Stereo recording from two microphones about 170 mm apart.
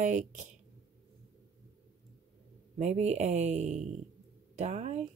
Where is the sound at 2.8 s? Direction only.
40° right (ahead or behind).